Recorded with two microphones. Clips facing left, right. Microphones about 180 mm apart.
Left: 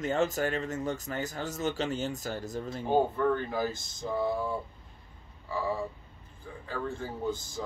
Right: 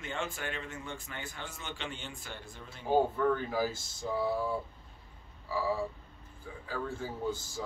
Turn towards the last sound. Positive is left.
turn(degrees=-10)  # may be behind; listen again after turning